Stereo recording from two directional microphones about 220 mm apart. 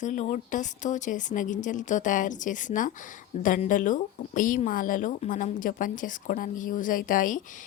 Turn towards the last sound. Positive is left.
turn(degrees=40)  # may be behind; listen again after turning